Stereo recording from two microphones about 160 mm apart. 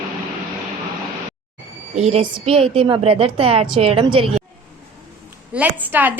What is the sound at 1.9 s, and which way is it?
A woman's voice, 40° right (ahead or behind).